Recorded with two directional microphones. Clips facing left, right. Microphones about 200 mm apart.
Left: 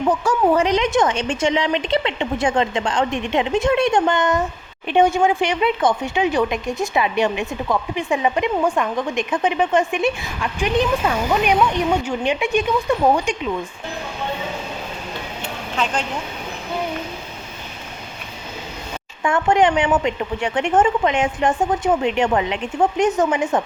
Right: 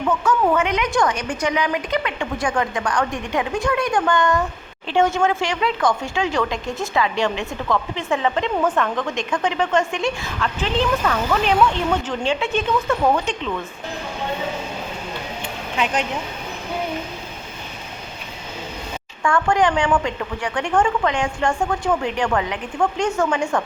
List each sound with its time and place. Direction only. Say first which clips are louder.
0.3 s a woman's voice: left 1 dB; 35° left (ahead or behind)
0.9 s a woman's voice: left 2 dB; 20° left (ahead or behind)
19.2 s a woman's voice: left 2 dB; 20° left (ahead or behind)